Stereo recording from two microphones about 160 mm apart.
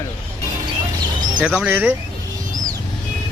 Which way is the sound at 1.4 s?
5° right (ahead or behind).